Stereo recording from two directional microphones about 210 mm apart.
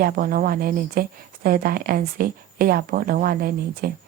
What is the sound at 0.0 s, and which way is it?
A woman's voice, 40° right (ahead or behind).